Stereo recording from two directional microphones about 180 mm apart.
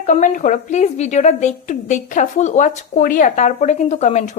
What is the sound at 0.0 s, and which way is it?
Speech, 45° left (ahead or behind).